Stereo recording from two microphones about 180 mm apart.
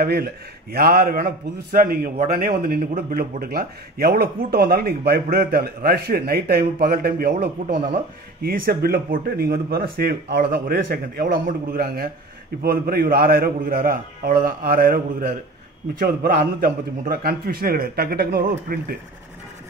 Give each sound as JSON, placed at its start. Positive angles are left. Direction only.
{"t": 0.0, "sound": "a man's voice", "side_deg": -60}